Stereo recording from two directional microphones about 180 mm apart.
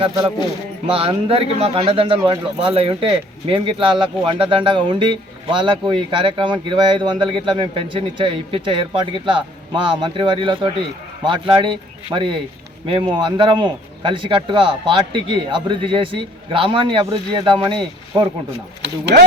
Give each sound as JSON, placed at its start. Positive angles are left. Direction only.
{"t": 0.9, "sound": "speech", "side_deg": -30}
{"t": 19.1, "sound": "speech", "side_deg": -65}